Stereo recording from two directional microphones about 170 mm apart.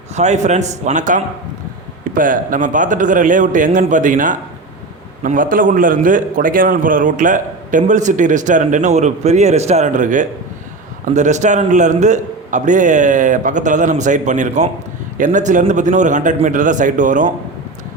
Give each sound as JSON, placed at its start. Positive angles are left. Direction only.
{"t": 0.2, "sound": "a man's voice", "side_deg": -45}